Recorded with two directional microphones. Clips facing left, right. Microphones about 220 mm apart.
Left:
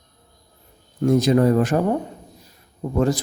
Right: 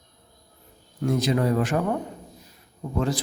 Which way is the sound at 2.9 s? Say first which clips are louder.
Left 6 dB; 45° left (ahead or behind).